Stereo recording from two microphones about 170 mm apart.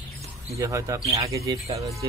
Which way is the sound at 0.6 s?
20° right (ahead or behind).